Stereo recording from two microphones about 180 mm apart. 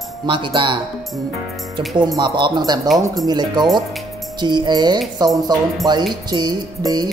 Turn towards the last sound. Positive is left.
turn(degrees=-25)  # may be behind; listen again after turning